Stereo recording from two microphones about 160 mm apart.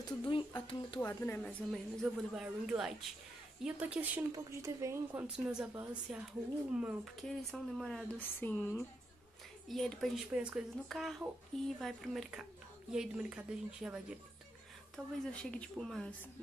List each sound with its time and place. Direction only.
0.0 s speech: 30° left (ahead or behind)
1.0 s speech: 15° left (ahead or behind)
1.7 s a woman's voice: centre (ahead or behind); by 5.2 s 20° right (ahead or behind)
5.2 s a woman's voice: 5° right (ahead or behind)
8.2 s speech: 10° left (ahead or behind)
9.7 s a woman's voice: centre (ahead or behind)